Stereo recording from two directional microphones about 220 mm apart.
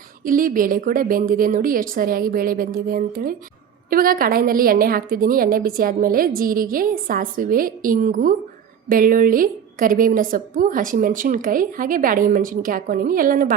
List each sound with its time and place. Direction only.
0.3 s a woman's voice: 40° right (ahead or behind)